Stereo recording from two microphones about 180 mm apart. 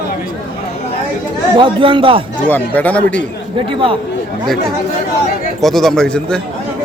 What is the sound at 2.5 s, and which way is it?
Speech, 10° left (ahead or behind).